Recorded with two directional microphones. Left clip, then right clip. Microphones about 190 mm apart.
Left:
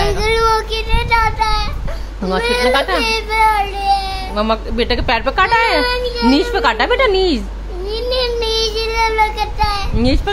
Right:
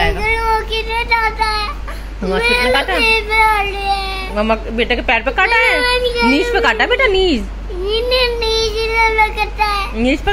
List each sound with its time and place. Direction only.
0.2 s child singing: 35° left (ahead or behind)
2.3 s a child's voice: 20° left (ahead or behind)
6.3 s a woman's voice: centre (ahead or behind)
7.9 s child singing: 15° left (ahead or behind)
10.0 s a woman's voice: 5° left (ahead or behind)